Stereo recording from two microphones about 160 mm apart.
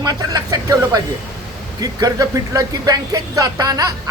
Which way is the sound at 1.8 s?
25° right (ahead or behind).